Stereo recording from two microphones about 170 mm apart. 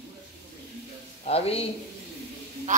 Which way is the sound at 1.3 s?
35° left (ahead or behind).